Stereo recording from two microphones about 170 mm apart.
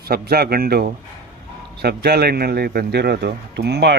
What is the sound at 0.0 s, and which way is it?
A man's voice, 65° right (ahead or behind).